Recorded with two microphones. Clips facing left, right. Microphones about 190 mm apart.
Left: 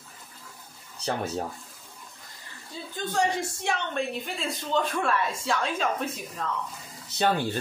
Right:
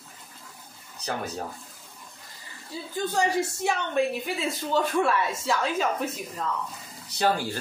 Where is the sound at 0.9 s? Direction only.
30° left (ahead or behind).